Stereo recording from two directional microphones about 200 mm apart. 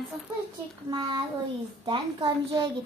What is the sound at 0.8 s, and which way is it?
A child's voice, 20° right (ahead or behind).